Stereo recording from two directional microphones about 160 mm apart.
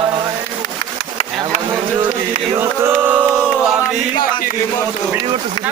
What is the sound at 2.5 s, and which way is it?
Chant, 15° right (ahead or behind).